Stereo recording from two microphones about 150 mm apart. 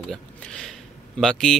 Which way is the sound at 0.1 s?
5° left (ahead or behind).